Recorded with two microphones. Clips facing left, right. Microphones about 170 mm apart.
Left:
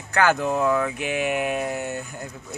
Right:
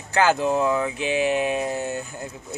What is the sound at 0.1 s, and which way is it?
Speech, 25° right (ahead or behind).